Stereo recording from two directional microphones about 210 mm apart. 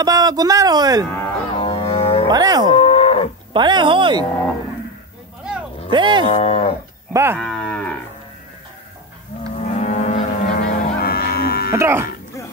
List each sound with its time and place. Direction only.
0.0 s speech: 20° right (ahead or behind)
1.6 s music: 25° left (ahead or behind)
2.2 s speech: 20° right (ahead or behind)
2.7 s moo: 25° left (ahead or behind)
3.5 s speech: 20° right (ahead or behind)
5.9 s speech: 20° right (ahead or behind)
6.2 s cattle: 30° left (ahead or behind)
7.1 s livestock: 15° right (ahead or behind)
7.3 s cattle: 5° left (ahead or behind)
9.4 s cattle: 30° left (ahead or behind)
11.7 s speech: 10° right (ahead or behind)